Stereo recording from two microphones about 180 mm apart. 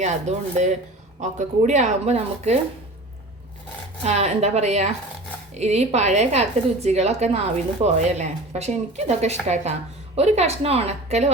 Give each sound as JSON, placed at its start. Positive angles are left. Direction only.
{"t": 0.0, "sound": "speech", "side_deg": -40}
{"t": 4.0, "sound": "speech", "side_deg": -35}